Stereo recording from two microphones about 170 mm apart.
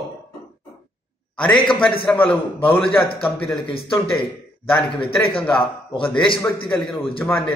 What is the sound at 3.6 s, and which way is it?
Speech, 30° left (ahead or behind).